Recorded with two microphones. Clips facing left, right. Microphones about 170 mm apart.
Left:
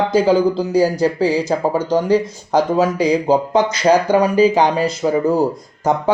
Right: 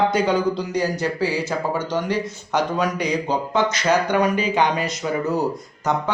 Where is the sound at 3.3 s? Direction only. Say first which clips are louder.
Left 6 dB; 35° left (ahead or behind).